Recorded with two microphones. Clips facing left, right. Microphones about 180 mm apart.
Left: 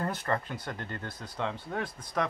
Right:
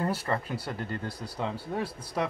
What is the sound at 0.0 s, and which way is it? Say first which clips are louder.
Speech: right 2 dB; 10° right (ahead or behind).